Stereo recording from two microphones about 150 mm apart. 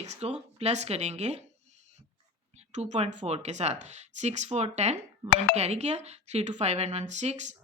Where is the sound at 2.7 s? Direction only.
50° right (ahead or behind).